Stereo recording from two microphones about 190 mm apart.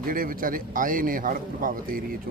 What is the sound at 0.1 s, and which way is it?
A man's voice, 50° right (ahead or behind).